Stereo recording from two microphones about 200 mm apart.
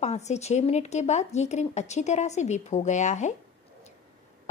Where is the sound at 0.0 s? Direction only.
35° left (ahead or behind).